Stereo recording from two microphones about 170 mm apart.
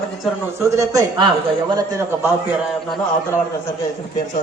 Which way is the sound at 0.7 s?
20° right (ahead or behind).